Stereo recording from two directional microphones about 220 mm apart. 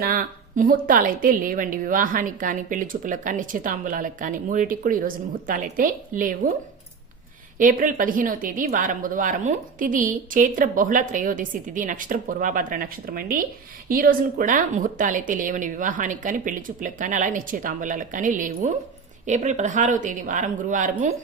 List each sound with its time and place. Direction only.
0.0 s a woman's voice: 40° right (ahead or behind)
7.6 s a woman's voice: 40° right (ahead or behind)